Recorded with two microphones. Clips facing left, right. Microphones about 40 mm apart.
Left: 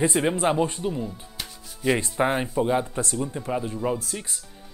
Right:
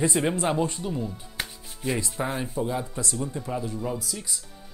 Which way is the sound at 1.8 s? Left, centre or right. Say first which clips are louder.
Left 6 dB; left.